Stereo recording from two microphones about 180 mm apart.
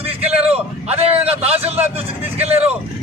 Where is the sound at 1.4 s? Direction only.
35° right (ahead or behind).